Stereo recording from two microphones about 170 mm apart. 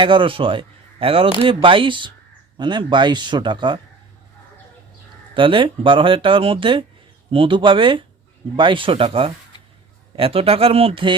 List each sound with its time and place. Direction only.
0.0 s speech: 30° right (ahead or behind)
5.3 s speech: 30° right (ahead or behind)